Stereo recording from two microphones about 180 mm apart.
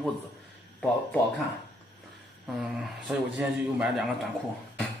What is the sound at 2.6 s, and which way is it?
Speech, 5° right (ahead or behind).